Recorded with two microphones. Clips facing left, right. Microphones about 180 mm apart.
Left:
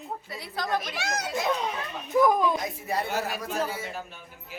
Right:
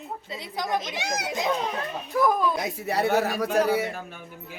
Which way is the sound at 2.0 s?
15° left (ahead or behind).